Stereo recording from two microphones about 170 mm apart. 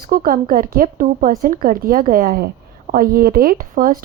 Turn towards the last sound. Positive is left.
turn(degrees=-55)  # may be behind; listen again after turning